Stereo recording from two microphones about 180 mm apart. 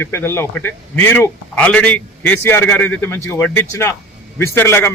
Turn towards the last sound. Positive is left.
turn(degrees=10)  # may be behind; listen again after turning